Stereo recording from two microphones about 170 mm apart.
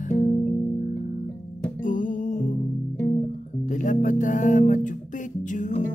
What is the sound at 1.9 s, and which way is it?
Music, 50° left (ahead or behind).